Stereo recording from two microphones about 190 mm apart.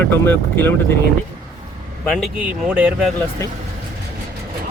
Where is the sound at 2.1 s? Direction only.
Centre (ahead or behind).